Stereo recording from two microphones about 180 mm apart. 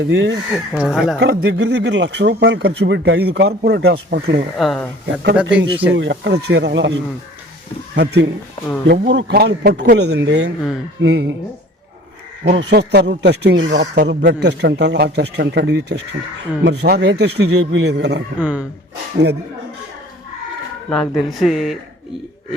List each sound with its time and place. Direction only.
0.0 s speech: 75° right (ahead or behind)
0.5 s speech: 5° right (ahead or behind)
1.2 s speech: 65° right (ahead or behind)
4.5 s a man's voice: centre (ahead or behind)
5.9 s speech: 75° right (ahead or behind)
7.9 s speech: 70° right (ahead or behind)
12.5 s speech: 65° right (ahead or behind)
18.3 s a man's voice: 10° right (ahead or behind)
20.9 s speech: centre (ahead or behind)